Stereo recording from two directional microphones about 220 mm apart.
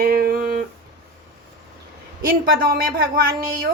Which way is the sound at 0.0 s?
40° right (ahead or behind).